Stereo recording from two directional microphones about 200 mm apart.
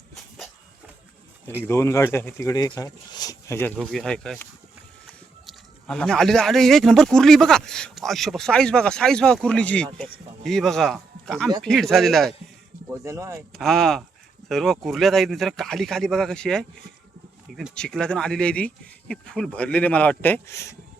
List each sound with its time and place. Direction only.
1.6 s speech: 15° left (ahead or behind)
12.9 s speech: 15° right (ahead or behind)
13.5 s speech: centre (ahead or behind)